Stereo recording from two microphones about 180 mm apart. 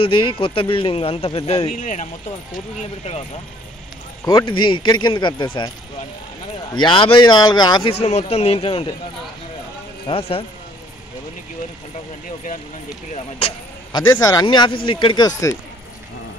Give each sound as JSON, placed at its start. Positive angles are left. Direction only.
{"t": 0.0, "sound": "speech", "side_deg": 30}
{"t": 1.8, "sound": "speech", "side_deg": 45}
{"t": 4.2, "sound": "speech", "side_deg": 20}
{"t": 6.7, "sound": "speech", "side_deg": 25}
{"t": 7.9, "sound": "speech", "side_deg": 35}
{"t": 10.0, "sound": "speech", "side_deg": 30}
{"t": 14.1, "sound": "speech", "side_deg": 20}